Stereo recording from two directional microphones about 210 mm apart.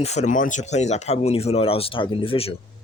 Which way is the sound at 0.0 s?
30° left (ahead or behind).